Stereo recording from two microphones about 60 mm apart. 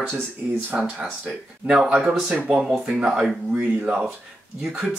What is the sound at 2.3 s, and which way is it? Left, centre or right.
Speech, right.